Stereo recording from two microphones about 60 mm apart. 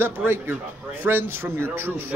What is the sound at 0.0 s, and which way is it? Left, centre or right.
A man's voice, right.